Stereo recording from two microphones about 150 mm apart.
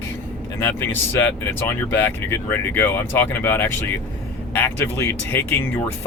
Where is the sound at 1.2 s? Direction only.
15° left (ahead or behind).